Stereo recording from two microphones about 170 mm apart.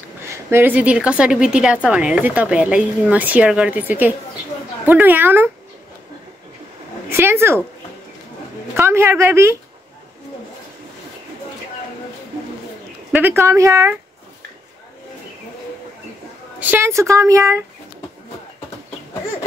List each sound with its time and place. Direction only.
0.3 s a woman's voice: 15° right (ahead or behind)
7.1 s speech: 15° right (ahead or behind)
8.7 s a woman's voice: 15° right (ahead or behind)
13.1 s a woman's voice: 15° right (ahead or behind)
16.5 s a woman's voice: 10° right (ahead or behind)